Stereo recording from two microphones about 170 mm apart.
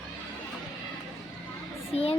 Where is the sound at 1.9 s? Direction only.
35° left (ahead or behind).